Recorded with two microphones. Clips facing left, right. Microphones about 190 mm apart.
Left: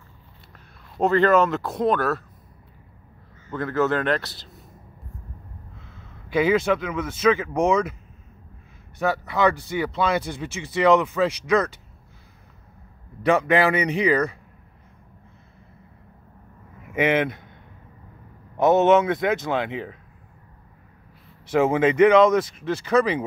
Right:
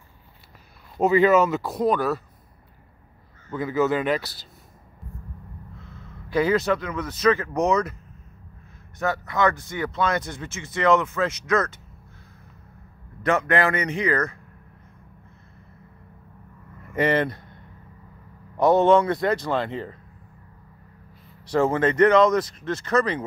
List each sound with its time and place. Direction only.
0.9 s speech: 5° right (ahead or behind)
3.5 s speech: 5° right (ahead or behind)
6.3 s speech: 5° left (ahead or behind)
9.0 s speech: 10° left (ahead or behind)
13.3 s speech: 10° left (ahead or behind)
16.8 s speech: 5° left (ahead or behind)
18.6 s a man's voice: 20° left (ahead or behind)
19.0 s speech: centre (ahead or behind)
21.5 s speech: 10° left (ahead or behind)